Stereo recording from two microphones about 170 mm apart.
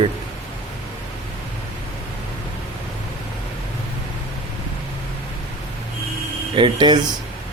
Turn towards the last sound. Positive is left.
turn(degrees=-25)  # may be behind; listen again after turning